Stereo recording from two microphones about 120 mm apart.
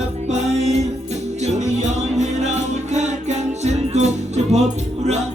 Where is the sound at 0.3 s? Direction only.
65° right (ahead or behind).